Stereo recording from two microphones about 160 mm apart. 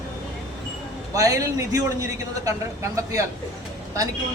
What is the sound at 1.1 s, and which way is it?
A man's voice, 20° right (ahead or behind).